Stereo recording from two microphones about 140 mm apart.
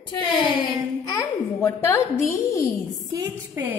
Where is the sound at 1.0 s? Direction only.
25° left (ahead or behind).